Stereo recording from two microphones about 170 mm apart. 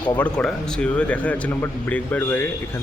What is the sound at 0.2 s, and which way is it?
A man's voice, 5° left (ahead or behind).